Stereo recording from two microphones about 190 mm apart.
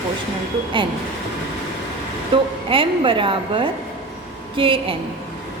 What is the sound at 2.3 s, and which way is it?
Speech, 30° right (ahead or behind).